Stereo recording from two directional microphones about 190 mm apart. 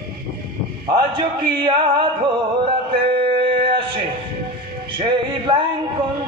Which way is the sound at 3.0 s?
30° right (ahead or behind).